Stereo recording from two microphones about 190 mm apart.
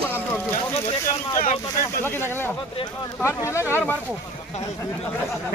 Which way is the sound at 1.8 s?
10° left (ahead or behind).